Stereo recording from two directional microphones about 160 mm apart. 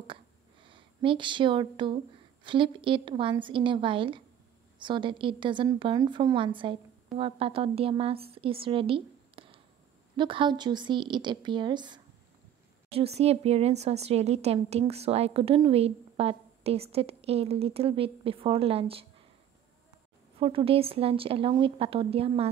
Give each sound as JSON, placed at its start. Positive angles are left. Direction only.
{"t": 0.7, "sound": "a woman's voice", "side_deg": -30}
{"t": 12.9, "sound": "speech", "side_deg": -40}
{"t": 20.3, "sound": "speech", "side_deg": -35}